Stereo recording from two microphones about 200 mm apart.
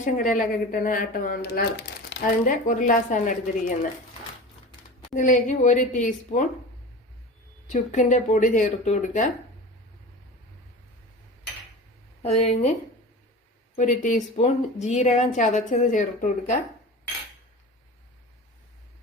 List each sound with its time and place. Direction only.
0.0 s speech: 40° left (ahead or behind)
2.4 s speech: 40° left (ahead or behind)
5.1 s speech: 40° left (ahead or behind)
7.7 s speech: 35° left (ahead or behind)
12.2 s speech: 35° left (ahead or behind)
13.7 s speech: 40° left (ahead or behind)